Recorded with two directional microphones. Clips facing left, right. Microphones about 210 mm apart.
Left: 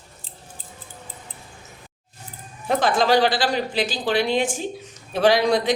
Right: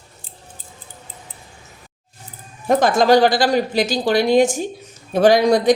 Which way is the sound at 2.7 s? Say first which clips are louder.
Right 5 dB; 45° right (ahead or behind).